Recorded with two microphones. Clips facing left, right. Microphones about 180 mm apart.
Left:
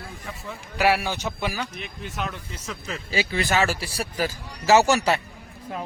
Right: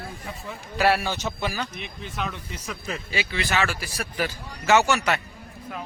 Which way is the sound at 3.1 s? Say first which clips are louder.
Left 4 dB; 40° left (ahead or behind).